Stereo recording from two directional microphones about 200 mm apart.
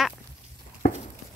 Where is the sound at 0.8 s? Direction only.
45° left (ahead or behind).